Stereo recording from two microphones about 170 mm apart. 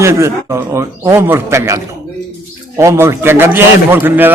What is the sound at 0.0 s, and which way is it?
A man's voice, 15° right (ahead or behind).